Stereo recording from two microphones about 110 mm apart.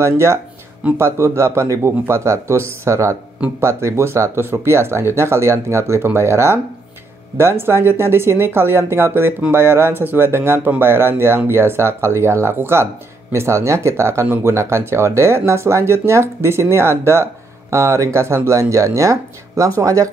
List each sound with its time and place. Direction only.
0.0 s speech: 25° right (ahead or behind)